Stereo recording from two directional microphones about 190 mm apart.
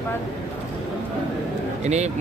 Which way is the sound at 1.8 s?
35° right (ahead or behind).